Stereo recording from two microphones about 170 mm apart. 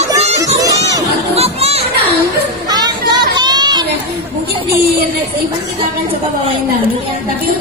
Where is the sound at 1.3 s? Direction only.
35° right (ahead or behind).